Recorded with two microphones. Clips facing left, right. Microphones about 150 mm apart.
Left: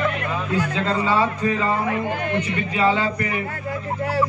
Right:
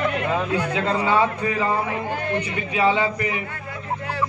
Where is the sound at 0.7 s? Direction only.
15° right (ahead or behind).